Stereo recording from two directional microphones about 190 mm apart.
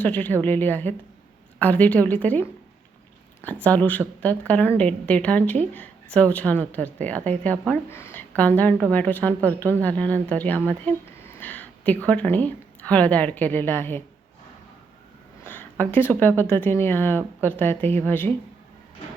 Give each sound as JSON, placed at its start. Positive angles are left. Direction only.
{"t": 0.0, "sound": "a woman's voice", "side_deg": 10}
{"t": 3.6, "sound": "a woman's voice", "side_deg": 10}
{"t": 10.8, "sound": "a sound", "side_deg": 10}
{"t": 12.0, "sound": "a woman's voice", "side_deg": 10}
{"t": 15.4, "sound": "a woman's voice", "side_deg": 10}